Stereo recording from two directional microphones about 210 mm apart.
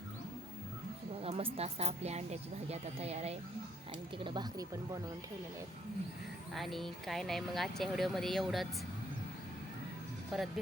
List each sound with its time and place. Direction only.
1.2 s a sound: 30° right (ahead or behind)
1.5 s speech: 30° right (ahead or behind)
6.5 s speech: centre (ahead or behind)
10.3 s speech: centre (ahead or behind)